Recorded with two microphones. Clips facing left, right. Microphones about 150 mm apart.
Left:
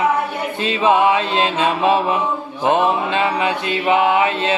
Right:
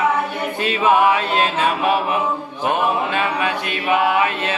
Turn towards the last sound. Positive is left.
turn(degrees=25)  # may be behind; listen again after turning